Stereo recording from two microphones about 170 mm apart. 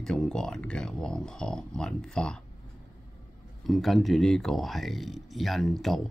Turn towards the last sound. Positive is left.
turn(degrees=0)  # may be behind; listen again after turning